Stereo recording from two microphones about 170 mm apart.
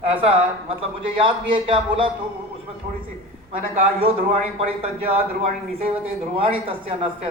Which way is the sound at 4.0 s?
35° right (ahead or behind).